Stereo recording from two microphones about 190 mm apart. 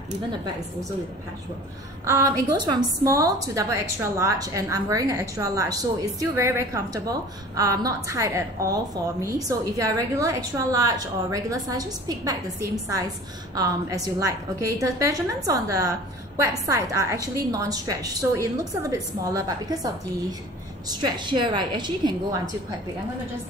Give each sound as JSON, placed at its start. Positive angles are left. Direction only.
{"t": 2.0, "sound": "a woman's voice", "side_deg": -15}
{"t": 21.0, "sound": "a woman's voice", "side_deg": -25}